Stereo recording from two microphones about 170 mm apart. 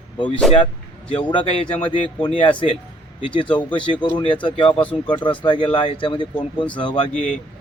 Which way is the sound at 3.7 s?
30° left (ahead or behind).